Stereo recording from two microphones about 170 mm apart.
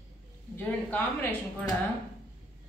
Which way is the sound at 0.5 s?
10° left (ahead or behind).